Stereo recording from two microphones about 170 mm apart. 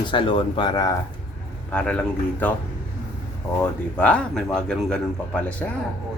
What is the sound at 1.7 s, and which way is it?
Speech, 5° left (ahead or behind).